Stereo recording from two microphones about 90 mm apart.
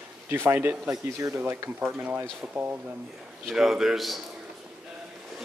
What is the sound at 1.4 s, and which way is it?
Speech, 20° right (ahead or behind).